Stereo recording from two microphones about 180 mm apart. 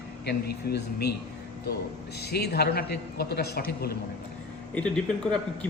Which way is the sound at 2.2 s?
65° left (ahead or behind).